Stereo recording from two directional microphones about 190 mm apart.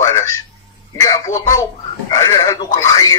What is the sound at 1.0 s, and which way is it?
Speech, 20° left (ahead or behind).